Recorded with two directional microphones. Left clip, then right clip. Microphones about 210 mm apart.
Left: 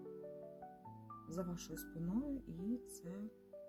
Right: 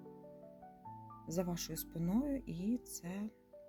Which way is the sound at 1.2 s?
35° right (ahead or behind).